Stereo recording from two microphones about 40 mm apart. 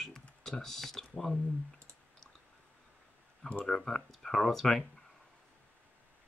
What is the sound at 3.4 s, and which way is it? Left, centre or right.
Speech, left.